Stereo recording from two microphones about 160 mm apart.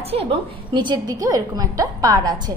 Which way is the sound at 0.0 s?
40° right (ahead or behind).